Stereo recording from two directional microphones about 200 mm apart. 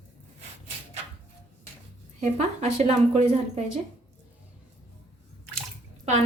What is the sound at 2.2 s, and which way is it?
Speech, 35° right (ahead or behind).